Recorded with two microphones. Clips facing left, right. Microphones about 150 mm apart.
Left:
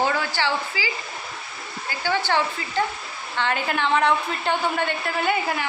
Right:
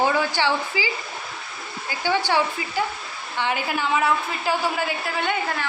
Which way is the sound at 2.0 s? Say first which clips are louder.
Right 1 dB; 15° right (ahead or behind).